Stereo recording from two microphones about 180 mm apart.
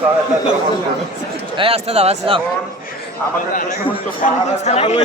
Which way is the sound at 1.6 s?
35° right (ahead or behind).